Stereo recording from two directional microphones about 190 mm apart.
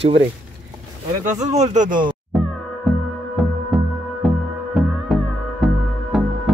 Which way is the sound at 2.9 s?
Centre (ahead or behind).